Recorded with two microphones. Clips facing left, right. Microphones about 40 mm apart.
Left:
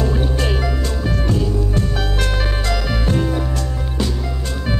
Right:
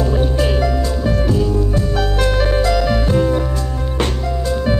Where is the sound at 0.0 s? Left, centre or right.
Centre.